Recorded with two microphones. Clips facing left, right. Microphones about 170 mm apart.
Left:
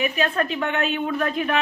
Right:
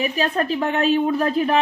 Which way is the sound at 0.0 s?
35° right (ahead or behind).